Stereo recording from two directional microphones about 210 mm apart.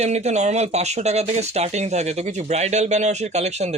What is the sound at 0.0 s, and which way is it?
Speech, 30° right (ahead or behind).